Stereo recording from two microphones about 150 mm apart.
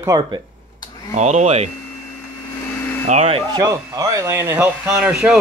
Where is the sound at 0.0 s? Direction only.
25° right (ahead or behind).